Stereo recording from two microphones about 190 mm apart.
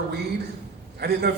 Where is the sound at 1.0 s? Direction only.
60° right (ahead or behind).